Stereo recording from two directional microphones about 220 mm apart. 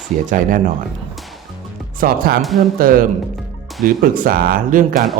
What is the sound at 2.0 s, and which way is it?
Speech, 40° right (ahead or behind).